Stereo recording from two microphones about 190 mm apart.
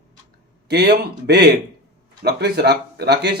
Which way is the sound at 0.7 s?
60° right (ahead or behind).